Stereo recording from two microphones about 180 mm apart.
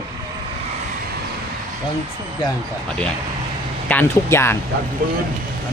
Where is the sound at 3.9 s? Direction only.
10° left (ahead or behind).